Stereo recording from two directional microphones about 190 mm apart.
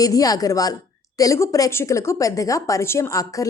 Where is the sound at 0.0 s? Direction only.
20° left (ahead or behind).